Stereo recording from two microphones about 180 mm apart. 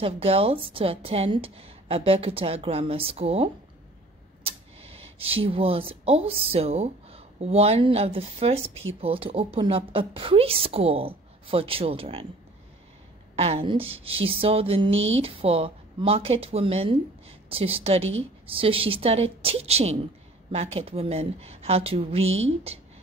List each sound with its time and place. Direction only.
0.0 s speech: 35° right (ahead or behind)
4.4 s tick-tock: 35° right (ahead or behind)
5.2 s speech: 30° right (ahead or behind)
13.4 s speech: 35° right (ahead or behind)